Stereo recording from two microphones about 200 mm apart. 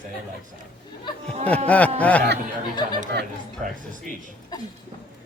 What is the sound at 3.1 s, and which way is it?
Speech, 55° right (ahead or behind).